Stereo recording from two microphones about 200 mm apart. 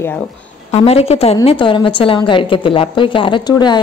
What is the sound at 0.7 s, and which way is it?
A woman's voice, 30° left (ahead or behind).